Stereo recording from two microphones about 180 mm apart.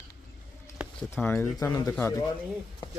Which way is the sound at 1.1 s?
10° left (ahead or behind).